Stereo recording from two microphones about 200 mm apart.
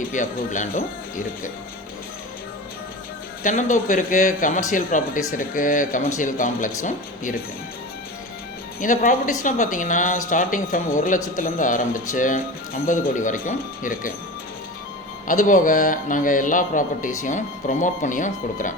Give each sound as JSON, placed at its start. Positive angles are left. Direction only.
{"t": 0.1, "sound": "speech", "side_deg": 40}
{"t": 3.4, "sound": "speech", "side_deg": 40}
{"t": 8.8, "sound": "speech", "side_deg": 40}
{"t": 15.3, "sound": "speech", "side_deg": 40}